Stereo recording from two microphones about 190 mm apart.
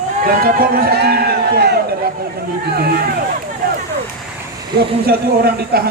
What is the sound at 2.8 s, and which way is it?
Speech, 55° right (ahead or behind).